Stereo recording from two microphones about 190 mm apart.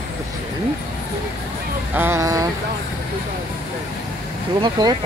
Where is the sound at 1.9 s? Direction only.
10° right (ahead or behind).